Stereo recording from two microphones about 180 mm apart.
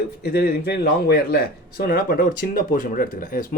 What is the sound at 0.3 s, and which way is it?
Speech, 60° left (ahead or behind).